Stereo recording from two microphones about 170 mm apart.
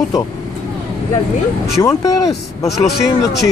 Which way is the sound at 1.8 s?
20° left (ahead or behind).